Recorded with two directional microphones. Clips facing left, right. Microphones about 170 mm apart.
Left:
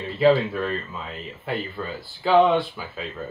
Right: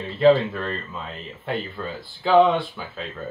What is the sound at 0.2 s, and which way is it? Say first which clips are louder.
Speech: right 2 dB; 5° left (ahead or behind).